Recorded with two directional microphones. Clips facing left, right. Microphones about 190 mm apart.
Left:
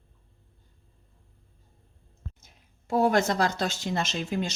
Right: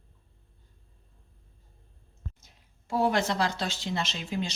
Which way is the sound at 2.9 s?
45° left (ahead or behind).